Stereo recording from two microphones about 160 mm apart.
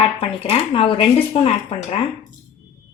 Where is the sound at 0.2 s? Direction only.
35° left (ahead or behind).